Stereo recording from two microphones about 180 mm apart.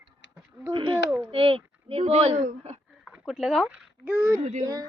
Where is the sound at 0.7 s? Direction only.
25° right (ahead or behind).